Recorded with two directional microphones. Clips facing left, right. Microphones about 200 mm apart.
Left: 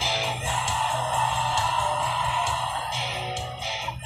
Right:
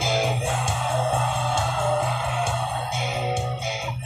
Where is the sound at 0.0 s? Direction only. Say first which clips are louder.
Right 6 dB; 50° right (ahead or behind).